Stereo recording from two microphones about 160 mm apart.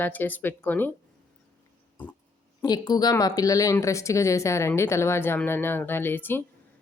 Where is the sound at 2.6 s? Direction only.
25° left (ahead or behind).